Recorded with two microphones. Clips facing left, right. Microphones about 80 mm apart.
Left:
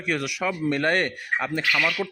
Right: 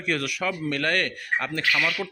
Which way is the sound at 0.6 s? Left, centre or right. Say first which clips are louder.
Left 4 dB; left.